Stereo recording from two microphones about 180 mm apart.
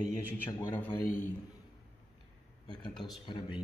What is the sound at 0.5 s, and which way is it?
Speech, 15° left (ahead or behind).